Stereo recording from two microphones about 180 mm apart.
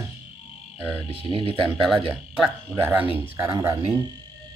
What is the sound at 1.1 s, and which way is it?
Speech, 30° right (ahead or behind).